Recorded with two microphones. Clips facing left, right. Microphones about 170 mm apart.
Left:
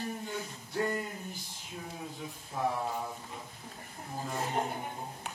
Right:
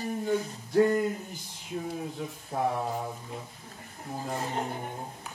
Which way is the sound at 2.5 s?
55° right (ahead or behind).